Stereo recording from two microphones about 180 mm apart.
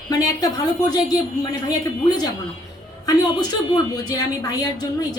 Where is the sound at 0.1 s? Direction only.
20° left (ahead or behind).